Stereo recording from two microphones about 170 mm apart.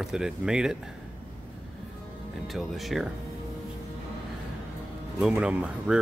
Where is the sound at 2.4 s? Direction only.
Centre (ahead or behind).